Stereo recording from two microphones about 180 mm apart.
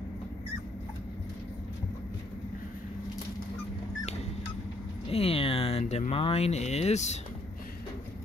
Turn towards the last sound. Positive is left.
turn(degrees=40)  # may be behind; listen again after turning